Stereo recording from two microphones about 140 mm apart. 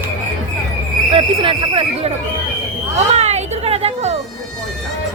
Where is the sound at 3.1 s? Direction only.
50° right (ahead or behind).